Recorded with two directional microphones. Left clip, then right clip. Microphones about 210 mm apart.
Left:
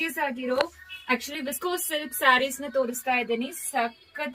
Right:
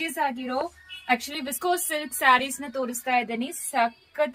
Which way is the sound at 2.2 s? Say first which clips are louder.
Right 1 dB; 20° right (ahead or behind).